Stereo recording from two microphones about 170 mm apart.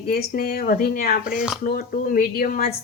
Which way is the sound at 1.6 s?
60° left (ahead or behind).